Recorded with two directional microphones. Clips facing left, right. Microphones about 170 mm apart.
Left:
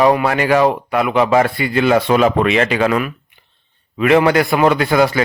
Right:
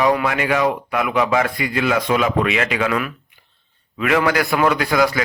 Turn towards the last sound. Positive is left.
turn(degrees=30)  # may be behind; listen again after turning